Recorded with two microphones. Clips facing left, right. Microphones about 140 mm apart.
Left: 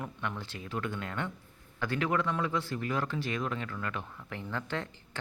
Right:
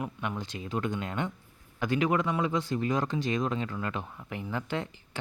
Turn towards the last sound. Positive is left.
turn(degrees=-15)  # may be behind; listen again after turning